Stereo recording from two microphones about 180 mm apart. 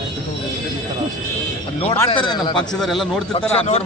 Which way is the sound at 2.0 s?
25° left (ahead or behind).